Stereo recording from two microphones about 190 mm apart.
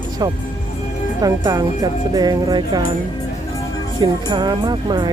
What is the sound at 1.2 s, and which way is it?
Speech, 20° right (ahead or behind).